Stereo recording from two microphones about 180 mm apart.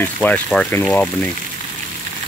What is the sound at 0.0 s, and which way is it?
Speech, 10° left (ahead or behind).